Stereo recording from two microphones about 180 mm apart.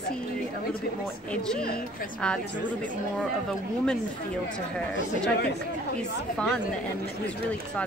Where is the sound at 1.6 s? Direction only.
55° left (ahead or behind).